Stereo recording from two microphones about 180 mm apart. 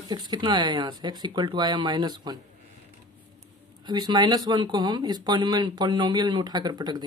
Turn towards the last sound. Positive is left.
turn(degrees=-25)  # may be behind; listen again after turning